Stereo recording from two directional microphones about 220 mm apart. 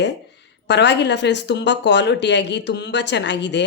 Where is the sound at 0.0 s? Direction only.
50° left (ahead or behind).